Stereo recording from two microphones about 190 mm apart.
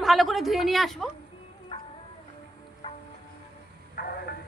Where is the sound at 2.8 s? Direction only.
25° left (ahead or behind).